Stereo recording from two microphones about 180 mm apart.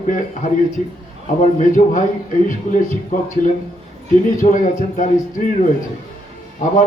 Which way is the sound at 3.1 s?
45° left (ahead or behind).